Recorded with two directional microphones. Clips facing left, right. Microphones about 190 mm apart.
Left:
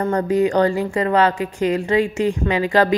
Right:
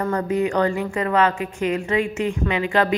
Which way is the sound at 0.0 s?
35° left (ahead or behind).